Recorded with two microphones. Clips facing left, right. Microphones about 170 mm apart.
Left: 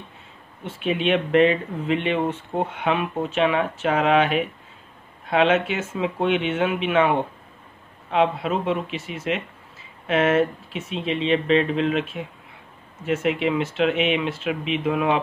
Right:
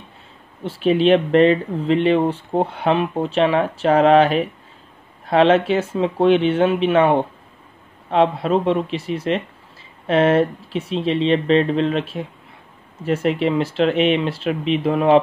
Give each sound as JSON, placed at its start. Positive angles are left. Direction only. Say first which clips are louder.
{"t": 0.7, "sound": "speech", "louder": "right 7 dB", "side_deg": -35}